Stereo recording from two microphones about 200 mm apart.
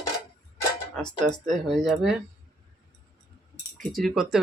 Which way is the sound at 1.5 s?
Centre (ahead or behind).